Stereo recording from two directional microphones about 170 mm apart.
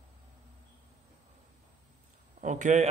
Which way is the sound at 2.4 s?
45° right (ahead or behind).